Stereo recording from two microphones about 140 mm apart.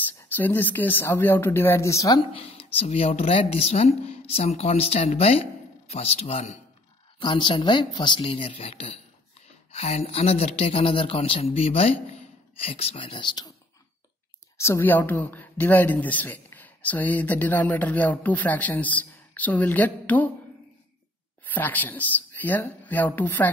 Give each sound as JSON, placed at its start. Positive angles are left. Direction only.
{"t": 0.4, "sound": "speech", "side_deg": 15}
{"t": 2.3, "sound": "speech", "side_deg": 40}
{"t": 7.2, "sound": "speech", "side_deg": 35}
{"t": 14.6, "sound": "speech", "side_deg": 15}
{"t": 21.5, "sound": "speech", "side_deg": 15}